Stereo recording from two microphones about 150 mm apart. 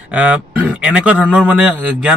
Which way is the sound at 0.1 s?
10° right (ahead or behind).